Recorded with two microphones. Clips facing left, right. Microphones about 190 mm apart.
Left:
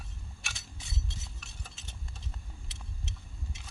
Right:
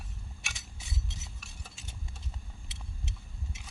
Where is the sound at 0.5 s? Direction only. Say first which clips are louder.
Even; 10° right (ahead or behind).